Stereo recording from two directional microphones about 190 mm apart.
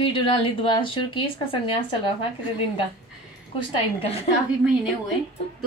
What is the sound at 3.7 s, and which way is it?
Speech, 30° left (ahead or behind).